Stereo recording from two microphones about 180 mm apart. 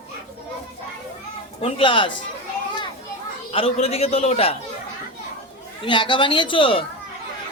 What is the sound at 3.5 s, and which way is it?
A man's voice, 30° left (ahead or behind).